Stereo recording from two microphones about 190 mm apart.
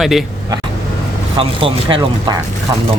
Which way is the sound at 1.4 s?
30° right (ahead or behind).